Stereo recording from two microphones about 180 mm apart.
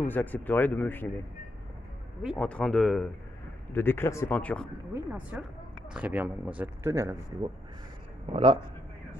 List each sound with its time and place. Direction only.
0.0 s speech: 10° left (ahead or behind)
2.2 s speech: 5° left (ahead or behind)
3.7 s speech: 10° left (ahead or behind)
4.9 s speech: 10° right (ahead or behind)
8.3 s a man's voice: 30° right (ahead or behind)